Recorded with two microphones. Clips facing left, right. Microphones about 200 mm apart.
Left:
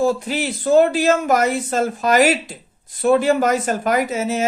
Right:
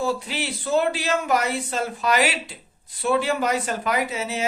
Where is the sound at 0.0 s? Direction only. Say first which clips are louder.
Left 7 dB; 45° left (ahead or behind).